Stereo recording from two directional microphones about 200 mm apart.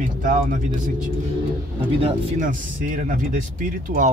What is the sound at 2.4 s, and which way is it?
Speech, 40° right (ahead or behind).